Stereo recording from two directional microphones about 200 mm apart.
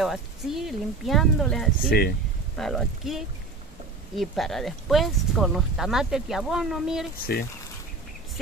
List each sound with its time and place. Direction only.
0.0 s speech: centre (ahead or behind)
1.9 s speech: 50° left (ahead or behind)
2.5 s speech: centre (ahead or behind)